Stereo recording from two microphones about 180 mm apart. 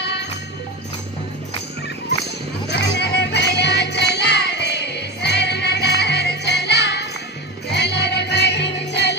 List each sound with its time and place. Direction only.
0.0 s music: 70° left (ahead or behind)
2.7 s music: 70° left (ahead or behind)